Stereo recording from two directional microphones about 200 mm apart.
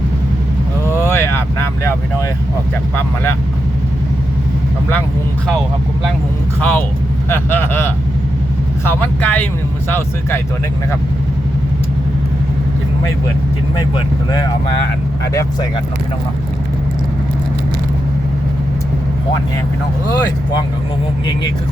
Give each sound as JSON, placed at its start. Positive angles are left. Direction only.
{"t": 0.9, "sound": "vehicle", "side_deg": 10}
{"t": 6.6, "sound": "speech", "side_deg": 10}
{"t": 13.7, "sound": "speech", "side_deg": 20}
{"t": 20.1, "sound": "speech", "side_deg": 20}